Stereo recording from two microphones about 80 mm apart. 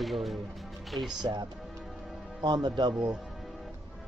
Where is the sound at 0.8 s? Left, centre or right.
Centre.